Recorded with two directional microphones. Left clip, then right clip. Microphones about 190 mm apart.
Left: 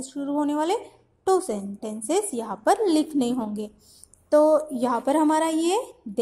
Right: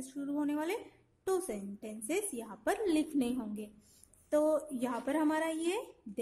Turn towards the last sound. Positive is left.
turn(degrees=20)  # may be behind; listen again after turning